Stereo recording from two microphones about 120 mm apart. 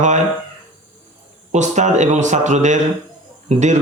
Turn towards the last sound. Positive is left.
turn(degrees=-75)  # may be behind; listen again after turning